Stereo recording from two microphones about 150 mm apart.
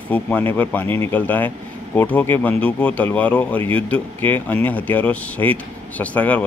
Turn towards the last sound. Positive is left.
turn(degrees=10)  # may be behind; listen again after turning